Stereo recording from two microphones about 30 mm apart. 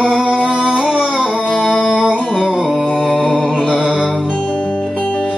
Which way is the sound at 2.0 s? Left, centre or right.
Right.